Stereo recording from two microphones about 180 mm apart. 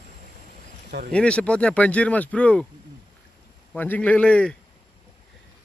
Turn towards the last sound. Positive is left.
turn(degrees=5)  # may be behind; listen again after turning